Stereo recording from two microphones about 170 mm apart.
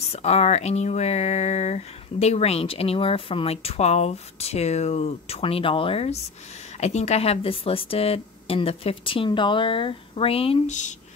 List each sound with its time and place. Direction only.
0.0 s speech: 40° left (ahead or behind)